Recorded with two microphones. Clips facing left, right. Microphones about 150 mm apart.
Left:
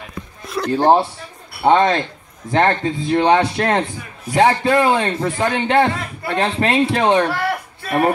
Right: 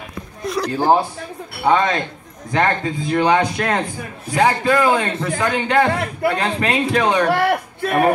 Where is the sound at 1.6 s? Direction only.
30° left (ahead or behind).